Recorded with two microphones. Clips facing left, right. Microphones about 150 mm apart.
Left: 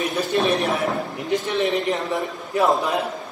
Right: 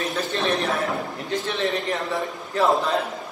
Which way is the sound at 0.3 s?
15° left (ahead or behind).